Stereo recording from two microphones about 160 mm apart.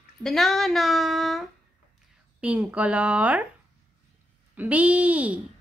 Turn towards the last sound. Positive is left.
turn(degrees=-10)  # may be behind; listen again after turning